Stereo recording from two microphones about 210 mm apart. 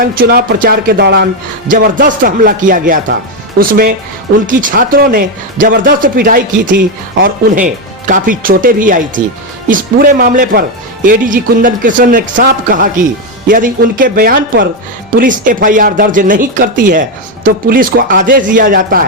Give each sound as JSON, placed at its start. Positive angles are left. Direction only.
{"t": 0.0, "sound": "speech", "side_deg": -45}